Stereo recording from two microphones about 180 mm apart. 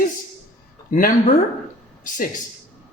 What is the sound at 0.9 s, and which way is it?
Speech, 50° left (ahead or behind).